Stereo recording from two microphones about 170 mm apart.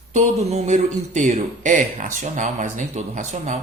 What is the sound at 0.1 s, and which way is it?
Speech, 40° right (ahead or behind).